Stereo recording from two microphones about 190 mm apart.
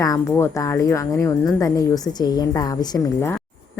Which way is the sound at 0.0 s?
15° left (ahead or behind).